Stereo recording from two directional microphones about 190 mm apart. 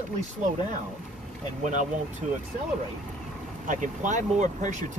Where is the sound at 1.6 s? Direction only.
40° right (ahead or behind).